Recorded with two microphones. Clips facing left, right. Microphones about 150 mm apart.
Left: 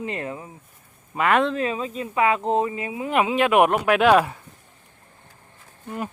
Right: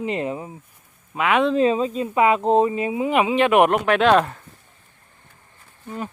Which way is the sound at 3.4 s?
5° left (ahead or behind).